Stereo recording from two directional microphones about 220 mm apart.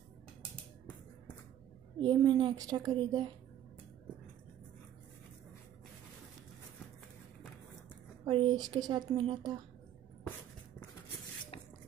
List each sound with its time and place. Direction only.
2.0 s speech: 20° right (ahead or behind)
8.3 s speech: 20° right (ahead or behind)